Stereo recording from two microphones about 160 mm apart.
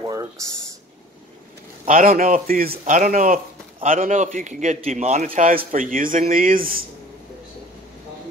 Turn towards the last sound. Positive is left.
turn(degrees=-60)  # may be behind; listen again after turning